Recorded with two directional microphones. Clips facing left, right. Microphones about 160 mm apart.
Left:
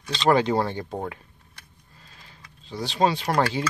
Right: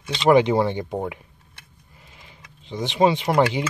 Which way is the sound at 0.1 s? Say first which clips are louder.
Right 4 dB; 15° right (ahead or behind).